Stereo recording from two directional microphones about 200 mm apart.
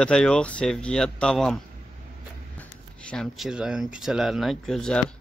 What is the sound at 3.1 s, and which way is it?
Speech, centre (ahead or behind).